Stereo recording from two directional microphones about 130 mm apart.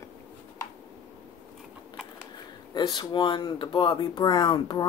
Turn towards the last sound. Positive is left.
turn(degrees=35)  # may be behind; listen again after turning